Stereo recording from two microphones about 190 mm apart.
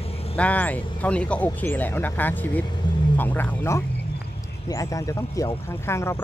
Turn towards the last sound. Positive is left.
turn(degrees=15)  # may be behind; listen again after turning